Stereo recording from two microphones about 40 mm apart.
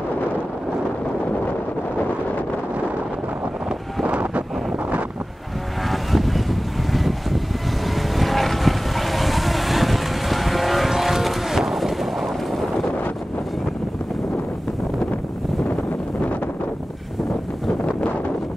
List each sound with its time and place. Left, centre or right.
4.0 s wind noise: right
5.9 s vehicle: centre